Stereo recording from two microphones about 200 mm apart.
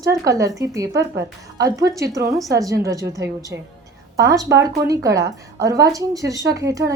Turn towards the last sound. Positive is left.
turn(degrees=-15)  # may be behind; listen again after turning